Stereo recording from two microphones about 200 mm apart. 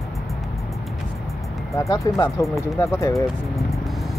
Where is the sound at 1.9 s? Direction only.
20° left (ahead or behind).